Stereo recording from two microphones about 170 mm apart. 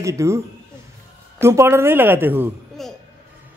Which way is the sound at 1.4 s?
15° right (ahead or behind).